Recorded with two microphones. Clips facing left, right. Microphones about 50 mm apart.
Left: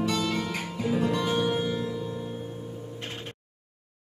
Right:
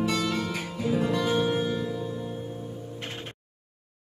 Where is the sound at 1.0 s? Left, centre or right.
Centre.